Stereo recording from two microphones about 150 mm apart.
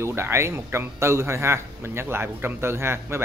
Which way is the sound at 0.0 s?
15° right (ahead or behind).